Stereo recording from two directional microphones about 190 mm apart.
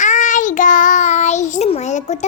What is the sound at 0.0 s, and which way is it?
Child singing, 40° left (ahead or behind).